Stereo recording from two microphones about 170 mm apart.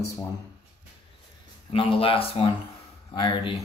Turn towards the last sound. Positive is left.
turn(degrees=30)  # may be behind; listen again after turning